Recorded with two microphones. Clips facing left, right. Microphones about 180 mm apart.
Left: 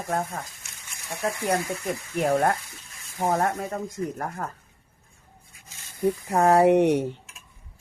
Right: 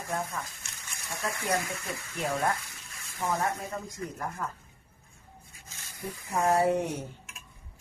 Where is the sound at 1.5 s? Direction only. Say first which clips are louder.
Left 4 dB; 45° left (ahead or behind).